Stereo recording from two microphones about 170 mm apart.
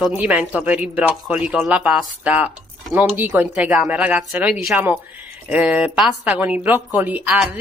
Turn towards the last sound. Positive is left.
turn(degrees=-10)  # may be behind; listen again after turning